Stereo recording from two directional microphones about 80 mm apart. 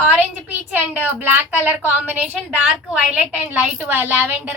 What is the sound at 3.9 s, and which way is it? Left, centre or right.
Speech, right.